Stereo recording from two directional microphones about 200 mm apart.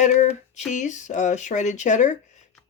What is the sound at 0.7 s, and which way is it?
Speech, 35° left (ahead or behind).